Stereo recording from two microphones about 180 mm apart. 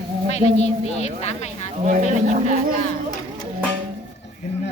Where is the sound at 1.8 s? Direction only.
45° right (ahead or behind).